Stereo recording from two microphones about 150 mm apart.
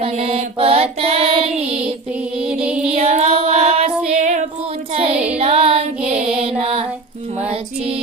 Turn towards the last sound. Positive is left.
turn(degrees=-40)  # may be behind; listen again after turning